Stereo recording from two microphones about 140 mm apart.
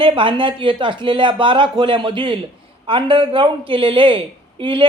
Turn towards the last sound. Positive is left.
turn(degrees=-35)  # may be behind; listen again after turning